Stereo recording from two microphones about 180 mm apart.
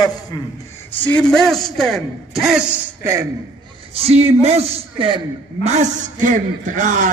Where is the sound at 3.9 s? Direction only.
35° right (ahead or behind).